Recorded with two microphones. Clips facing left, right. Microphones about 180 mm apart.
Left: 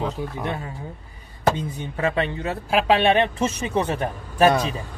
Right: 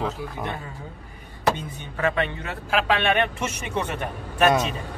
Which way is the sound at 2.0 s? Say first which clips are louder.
Left 1 dB; 30° left (ahead or behind).